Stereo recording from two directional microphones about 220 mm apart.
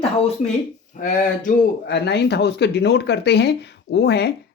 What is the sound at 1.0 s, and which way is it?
Speech, 35° left (ahead or behind).